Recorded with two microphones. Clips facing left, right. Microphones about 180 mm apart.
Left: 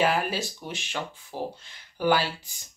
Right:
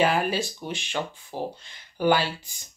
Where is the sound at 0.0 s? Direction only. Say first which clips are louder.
Right 2 dB; 5° left (ahead or behind).